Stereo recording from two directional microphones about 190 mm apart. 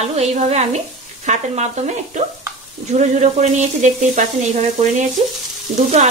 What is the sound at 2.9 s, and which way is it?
Speech, 35° right (ahead or behind).